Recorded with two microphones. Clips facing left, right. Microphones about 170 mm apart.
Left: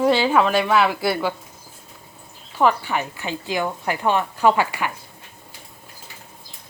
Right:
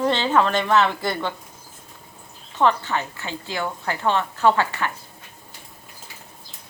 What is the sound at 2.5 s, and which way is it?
Speech, 10° left (ahead or behind).